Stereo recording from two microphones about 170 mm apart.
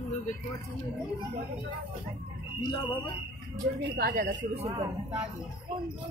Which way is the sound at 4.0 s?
55° right (ahead or behind).